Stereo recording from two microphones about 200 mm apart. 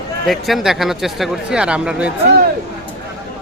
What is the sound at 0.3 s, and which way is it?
A man's voice, centre (ahead or behind).